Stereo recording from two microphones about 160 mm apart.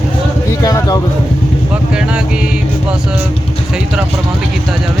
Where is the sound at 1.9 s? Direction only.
5° right (ahead or behind).